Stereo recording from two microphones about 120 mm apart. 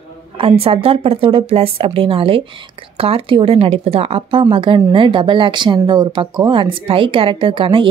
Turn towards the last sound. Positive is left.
turn(degrees=-45)  # may be behind; listen again after turning